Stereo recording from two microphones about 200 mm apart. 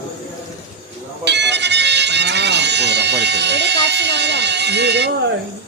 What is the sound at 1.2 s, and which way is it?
Music, 60° right (ahead or behind).